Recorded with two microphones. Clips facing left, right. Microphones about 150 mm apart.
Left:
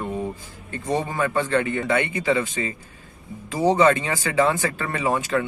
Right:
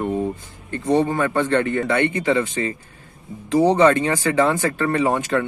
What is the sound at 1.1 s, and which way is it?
Speech, 40° right (ahead or behind).